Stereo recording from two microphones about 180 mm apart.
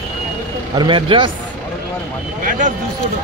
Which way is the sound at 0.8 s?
25° right (ahead or behind).